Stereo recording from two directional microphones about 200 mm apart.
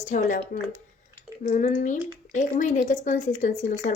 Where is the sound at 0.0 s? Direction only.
40° left (ahead or behind).